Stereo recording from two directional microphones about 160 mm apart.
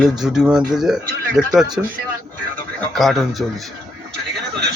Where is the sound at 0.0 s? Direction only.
5° right (ahead or behind).